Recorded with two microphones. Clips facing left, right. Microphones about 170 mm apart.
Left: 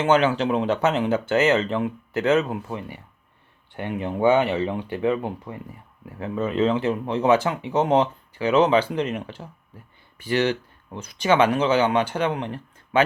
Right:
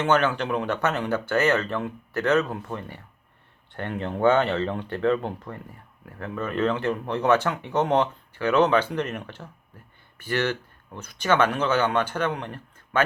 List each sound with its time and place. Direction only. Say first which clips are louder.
0.0 s speech: left 3 dB; 10° left (ahead or behind)